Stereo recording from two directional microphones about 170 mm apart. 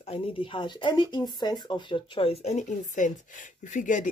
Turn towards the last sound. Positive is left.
turn(degrees=50)  # may be behind; listen again after turning